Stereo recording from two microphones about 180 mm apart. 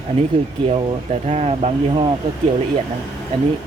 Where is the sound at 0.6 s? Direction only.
35° right (ahead or behind).